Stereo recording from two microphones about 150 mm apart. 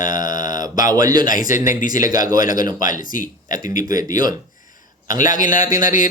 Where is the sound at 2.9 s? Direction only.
60° left (ahead or behind).